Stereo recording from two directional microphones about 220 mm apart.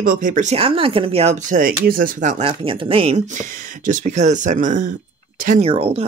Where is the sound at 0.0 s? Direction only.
35° right (ahead or behind).